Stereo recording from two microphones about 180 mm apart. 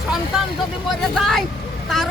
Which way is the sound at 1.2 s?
Centre (ahead or behind).